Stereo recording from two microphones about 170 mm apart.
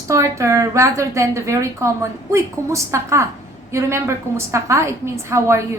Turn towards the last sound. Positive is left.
turn(degrees=-15)  # may be behind; listen again after turning